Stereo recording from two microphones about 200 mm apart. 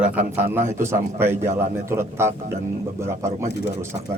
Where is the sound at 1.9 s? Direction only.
15° right (ahead or behind).